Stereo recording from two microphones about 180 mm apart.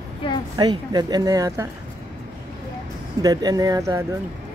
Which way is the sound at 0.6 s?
25° right (ahead or behind).